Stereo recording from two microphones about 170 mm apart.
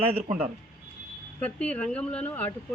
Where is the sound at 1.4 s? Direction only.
10° left (ahead or behind).